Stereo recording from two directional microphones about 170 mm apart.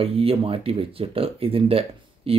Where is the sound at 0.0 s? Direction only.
35° right (ahead or behind).